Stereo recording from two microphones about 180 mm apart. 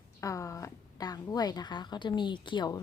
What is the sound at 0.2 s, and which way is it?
A woman's voice, 15° left (ahead or behind).